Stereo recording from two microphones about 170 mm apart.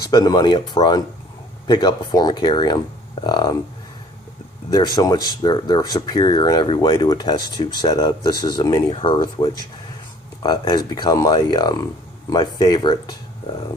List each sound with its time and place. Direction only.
0.1 s speech: 25° left (ahead or behind)
4.7 s speech: 25° left (ahead or behind)